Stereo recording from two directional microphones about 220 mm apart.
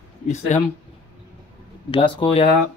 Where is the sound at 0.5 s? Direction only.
30° left (ahead or behind).